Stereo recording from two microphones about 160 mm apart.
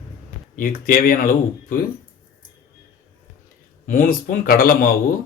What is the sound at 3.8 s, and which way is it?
Speech, 55° left (ahead or behind).